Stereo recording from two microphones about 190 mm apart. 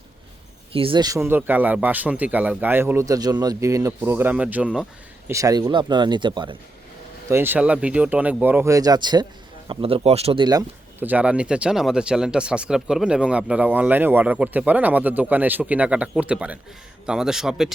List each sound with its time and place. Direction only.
0.7 s speech: 30° right (ahead or behind); by 4.9 s 5° right (ahead or behind)
5.3 s speech: 20° right (ahead or behind)
7.3 s speech: 10° right (ahead or behind)
11.0 s speech: 10° right (ahead or behind)